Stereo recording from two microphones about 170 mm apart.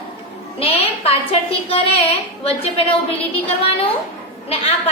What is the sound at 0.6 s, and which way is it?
A woman's voice, 35° left (ahead or behind).